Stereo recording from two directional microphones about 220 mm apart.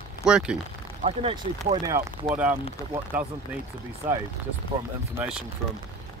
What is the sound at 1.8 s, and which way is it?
Speech, 15° right (ahead or behind).